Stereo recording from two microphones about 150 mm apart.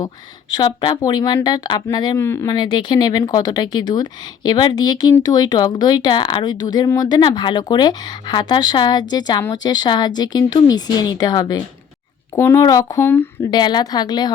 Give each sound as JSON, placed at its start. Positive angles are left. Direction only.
{"t": 0.5, "sound": "speech", "side_deg": 30}
{"t": 2.2, "sound": "speech", "side_deg": 15}
{"t": 2.5, "sound": "speech", "side_deg": 30}
{"t": 12.4, "sound": "speech", "side_deg": 15}
{"t": 13.5, "sound": "speech", "side_deg": 30}